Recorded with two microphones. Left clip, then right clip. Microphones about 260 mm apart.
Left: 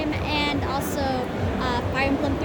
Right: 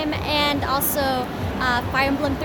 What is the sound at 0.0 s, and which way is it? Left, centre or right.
Music, right.